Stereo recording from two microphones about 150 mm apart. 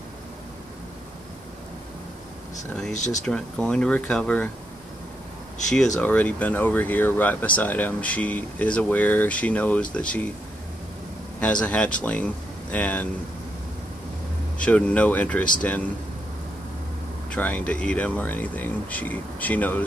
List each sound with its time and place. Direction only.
2.9 s speech: 50° left (ahead or behind)
3.3 s speech: 5° left (ahead or behind)
5.9 s speech: 10° left (ahead or behind)
11.3 s speech: 10° left (ahead or behind)
14.6 s speech: 10° left (ahead or behind)
17.3 s speech: 10° left (ahead or behind)